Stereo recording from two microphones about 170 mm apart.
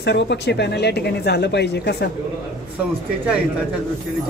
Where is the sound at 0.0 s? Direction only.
90° left.